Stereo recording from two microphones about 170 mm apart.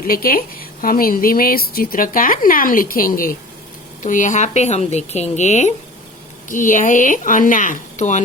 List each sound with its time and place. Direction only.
0.1 s a woman's voice: 60° left (ahead or behind)